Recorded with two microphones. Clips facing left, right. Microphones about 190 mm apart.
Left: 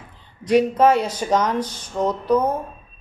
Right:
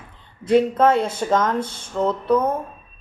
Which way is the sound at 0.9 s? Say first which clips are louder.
Right 1 dB; 25° right (ahead or behind).